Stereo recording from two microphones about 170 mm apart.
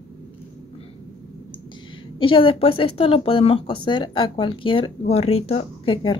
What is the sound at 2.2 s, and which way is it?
Speech, 30° left (ahead or behind).